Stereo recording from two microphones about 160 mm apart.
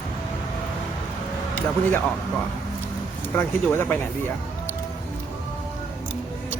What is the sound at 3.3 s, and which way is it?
Speech, 15° left (ahead or behind).